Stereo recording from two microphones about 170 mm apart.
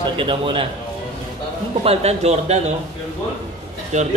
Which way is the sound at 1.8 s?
35° right (ahead or behind).